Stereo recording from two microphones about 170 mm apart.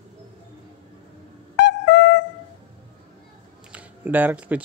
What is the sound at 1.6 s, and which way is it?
Wind instrument, 90° left.